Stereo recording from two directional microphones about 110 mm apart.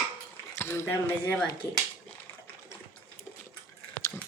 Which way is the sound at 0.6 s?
20° left (ahead or behind).